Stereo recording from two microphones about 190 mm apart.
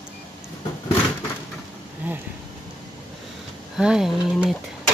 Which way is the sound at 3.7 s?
5° right (ahead or behind).